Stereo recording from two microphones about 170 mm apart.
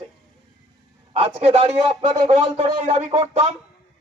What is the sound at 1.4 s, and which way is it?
A man's voice, 35° right (ahead or behind).